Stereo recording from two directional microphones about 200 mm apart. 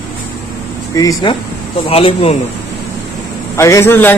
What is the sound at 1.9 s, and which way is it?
Speech, 30° left (ahead or behind).